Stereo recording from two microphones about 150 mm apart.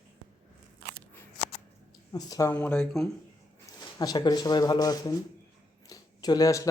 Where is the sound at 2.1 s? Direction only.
25° left (ahead or behind); by 3.1 s 5° left (ahead or behind).